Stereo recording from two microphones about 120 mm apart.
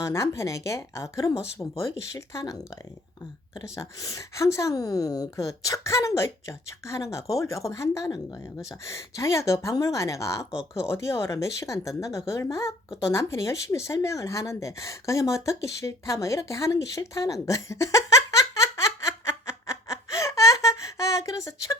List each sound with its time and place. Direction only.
0.0 s a woman's voice: 25° left (ahead or behind)
10.5 s speech: 5° right (ahead or behind)
10.8 s a woman's voice: 20° left (ahead or behind)